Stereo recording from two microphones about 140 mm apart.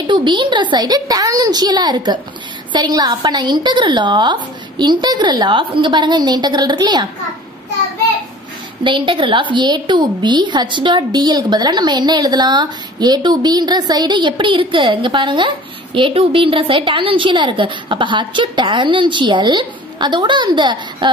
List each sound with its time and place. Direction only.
0.0 s a woman's voice: 35° right (ahead or behind)
8.8 s a woman's voice: 35° right (ahead or behind)